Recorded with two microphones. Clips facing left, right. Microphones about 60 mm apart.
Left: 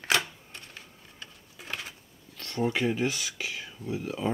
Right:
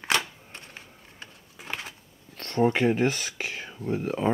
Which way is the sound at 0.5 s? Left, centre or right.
Right.